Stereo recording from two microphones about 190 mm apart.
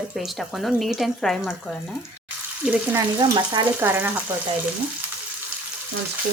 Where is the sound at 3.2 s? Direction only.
20° right (ahead or behind).